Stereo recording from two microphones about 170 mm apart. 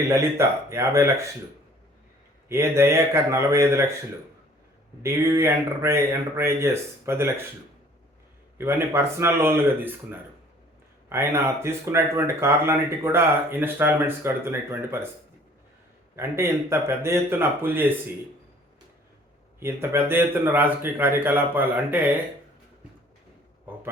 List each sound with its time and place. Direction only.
0.1 s speech: 15° right (ahead or behind)
2.5 s speech: 15° right (ahead or behind)
5.0 s speech: 15° right (ahead or behind)
8.5 s speech: 15° right (ahead or behind)
16.1 s speech: 15° right (ahead or behind)
19.5 s speech: 15° right (ahead or behind)